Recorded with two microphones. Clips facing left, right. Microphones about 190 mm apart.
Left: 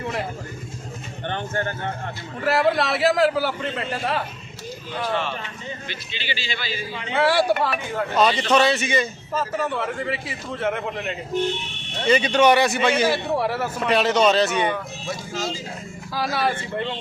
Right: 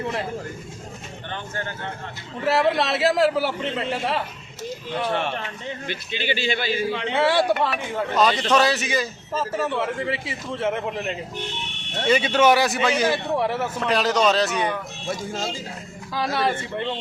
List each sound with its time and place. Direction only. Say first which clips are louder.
1.3 s speech: left 5 dB; 55° left (ahead or behind)
2.4 s a man's voice: even; centre (ahead or behind)
2.7 s a man's voice: left 1 dB; 25° right (ahead or behind)
3.2 s a man's voice: even; centre (ahead or behind)
5.1 s a man's voice: right 1 dB; 60° right (ahead or behind)
7.3 s a man's voice: even; centre (ahead or behind)
12.0 s a man's voice: left 1 dB; 5° right (ahead or behind)
16.1 s a man's voice: even; 5° left (ahead or behind)